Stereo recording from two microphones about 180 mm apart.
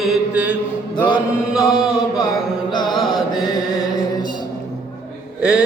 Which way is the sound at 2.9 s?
Centre (ahead or behind).